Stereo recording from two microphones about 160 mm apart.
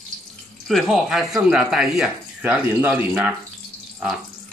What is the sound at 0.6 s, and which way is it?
Speech, centre (ahead or behind).